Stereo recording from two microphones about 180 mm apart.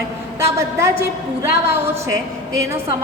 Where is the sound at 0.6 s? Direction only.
15° right (ahead or behind).